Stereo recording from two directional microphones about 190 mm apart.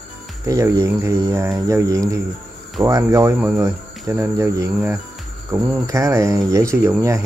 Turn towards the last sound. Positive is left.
turn(degrees=-15)  # may be behind; listen again after turning